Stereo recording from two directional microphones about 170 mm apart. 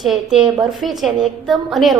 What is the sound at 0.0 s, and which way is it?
A woman's voice, centre (ahead or behind).